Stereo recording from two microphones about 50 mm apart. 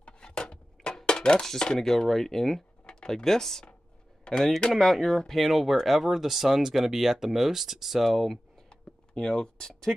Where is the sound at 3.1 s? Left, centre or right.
Centre.